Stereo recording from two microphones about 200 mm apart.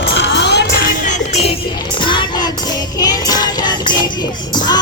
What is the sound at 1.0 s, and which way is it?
Music, 35° left (ahead or behind).